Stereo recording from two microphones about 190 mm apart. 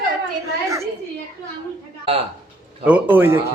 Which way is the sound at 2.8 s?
10° right (ahead or behind).